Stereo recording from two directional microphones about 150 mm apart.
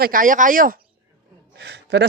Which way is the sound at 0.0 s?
65° right (ahead or behind).